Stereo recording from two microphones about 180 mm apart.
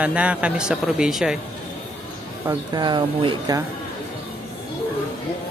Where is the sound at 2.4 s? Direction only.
25° right (ahead or behind).